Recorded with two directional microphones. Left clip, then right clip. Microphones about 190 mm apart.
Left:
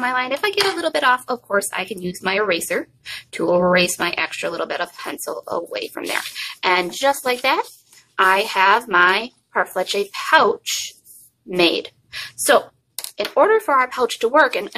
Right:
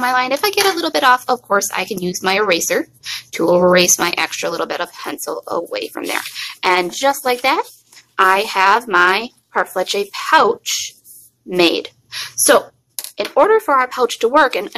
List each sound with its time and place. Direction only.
0.0 s speech: 25° right (ahead or behind)